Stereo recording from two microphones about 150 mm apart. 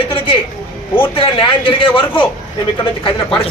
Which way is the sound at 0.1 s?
35° left (ahead or behind).